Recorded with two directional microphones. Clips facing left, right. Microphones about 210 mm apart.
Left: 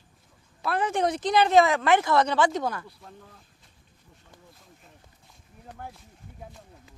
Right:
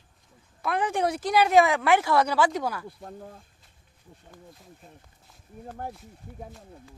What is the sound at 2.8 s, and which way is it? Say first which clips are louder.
Speech: right 7 dB; 45° right (ahead or behind).